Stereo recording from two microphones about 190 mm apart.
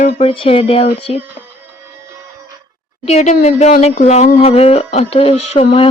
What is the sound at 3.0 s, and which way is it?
Speech, 35° left (ahead or behind).